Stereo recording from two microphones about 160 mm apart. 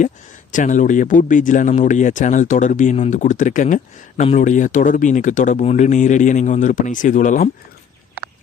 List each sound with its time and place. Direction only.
0.5 s speech: 55° left (ahead or behind)